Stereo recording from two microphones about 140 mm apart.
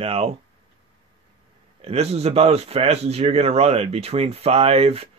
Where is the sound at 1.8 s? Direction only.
50° right (ahead or behind).